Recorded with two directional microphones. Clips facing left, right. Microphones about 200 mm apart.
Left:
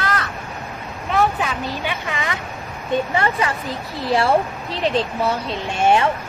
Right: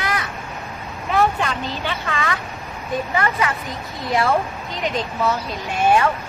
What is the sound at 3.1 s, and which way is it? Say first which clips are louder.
A woman's voice: left 1 dB; 30° left (ahead or behind).